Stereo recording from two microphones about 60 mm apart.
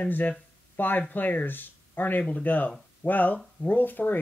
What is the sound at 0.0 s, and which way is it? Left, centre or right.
Speech, left.